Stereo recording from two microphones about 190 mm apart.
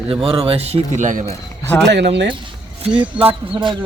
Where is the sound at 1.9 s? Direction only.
65° right (ahead or behind).